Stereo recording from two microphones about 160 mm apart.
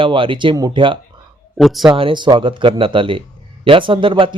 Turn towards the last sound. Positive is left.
turn(degrees=-30)  # may be behind; listen again after turning